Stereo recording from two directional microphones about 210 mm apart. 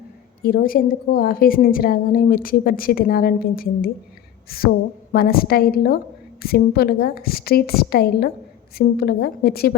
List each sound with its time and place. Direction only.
0.4 s a woman's voice: 45° left (ahead or behind)